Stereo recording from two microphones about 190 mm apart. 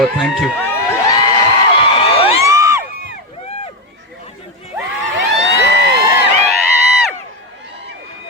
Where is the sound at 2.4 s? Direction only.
15° right (ahead or behind).